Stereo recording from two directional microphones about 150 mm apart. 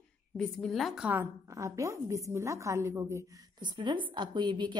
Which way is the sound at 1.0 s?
20° right (ahead or behind).